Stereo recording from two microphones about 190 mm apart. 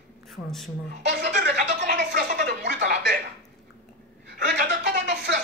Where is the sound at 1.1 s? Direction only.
60° right (ahead or behind).